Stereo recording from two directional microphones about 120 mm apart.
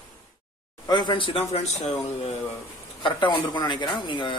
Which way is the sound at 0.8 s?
35° left (ahead or behind).